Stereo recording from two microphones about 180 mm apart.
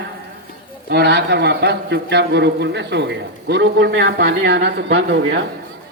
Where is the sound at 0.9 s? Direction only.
65° right (ahead or behind).